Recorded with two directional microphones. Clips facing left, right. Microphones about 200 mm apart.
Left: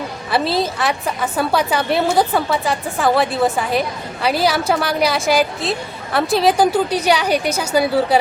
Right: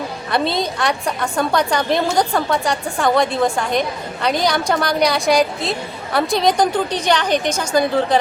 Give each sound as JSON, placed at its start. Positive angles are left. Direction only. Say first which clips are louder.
{"t": 0.3, "sound": "a woman's voice", "louder": "left 1 dB", "side_deg": 5}